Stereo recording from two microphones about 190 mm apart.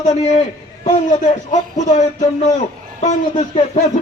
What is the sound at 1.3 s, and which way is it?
Speech, 40° left (ahead or behind).